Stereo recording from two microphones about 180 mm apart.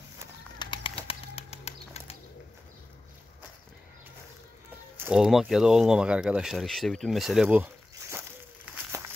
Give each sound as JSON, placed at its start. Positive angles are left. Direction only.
{"t": 0.6, "sound": "bird", "side_deg": 25}
{"t": 4.9, "sound": "speech", "side_deg": -10}
{"t": 8.6, "sound": "a sound", "side_deg": -10}